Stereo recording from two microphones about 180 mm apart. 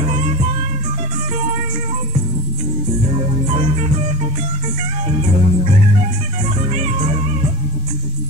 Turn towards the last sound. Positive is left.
turn(degrees=-35)  # may be behind; listen again after turning